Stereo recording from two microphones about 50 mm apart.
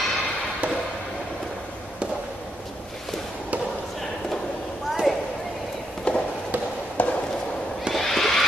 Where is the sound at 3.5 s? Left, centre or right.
Right.